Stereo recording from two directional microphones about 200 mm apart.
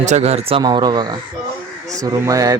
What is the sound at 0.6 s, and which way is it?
Speech, 20° right (ahead or behind).